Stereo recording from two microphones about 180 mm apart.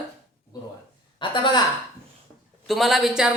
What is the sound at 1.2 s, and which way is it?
Speech, 25° left (ahead or behind).